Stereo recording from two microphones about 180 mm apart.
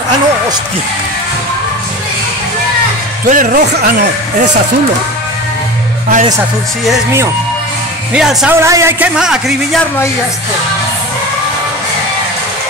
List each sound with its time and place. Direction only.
3.3 s speech: 50° right (ahead or behind)
8.1 s a man's voice: centre (ahead or behind)
8.5 s speech: 15° right (ahead or behind)
9.1 s a man's voice: 5° right (ahead or behind)